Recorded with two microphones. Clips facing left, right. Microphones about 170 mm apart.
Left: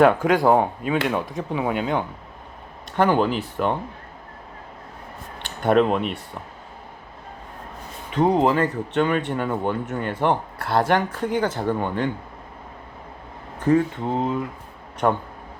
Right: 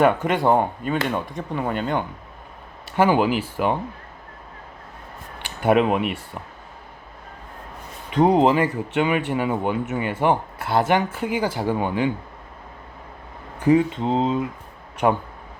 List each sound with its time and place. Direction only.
0.0 s speech: centre (ahead or behind)
5.4 s speech: 10° right (ahead or behind)
8.2 s speech: 15° right (ahead or behind)
13.6 s speech: 15° right (ahead or behind)
15.0 s speech: 10° right (ahead or behind)